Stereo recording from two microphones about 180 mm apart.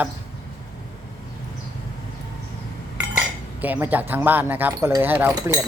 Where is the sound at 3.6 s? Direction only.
10° right (ahead or behind).